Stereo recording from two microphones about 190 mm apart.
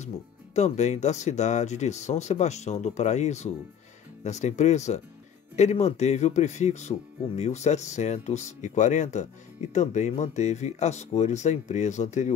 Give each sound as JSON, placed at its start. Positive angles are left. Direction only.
{"t": 0.6, "sound": "speech", "side_deg": 35}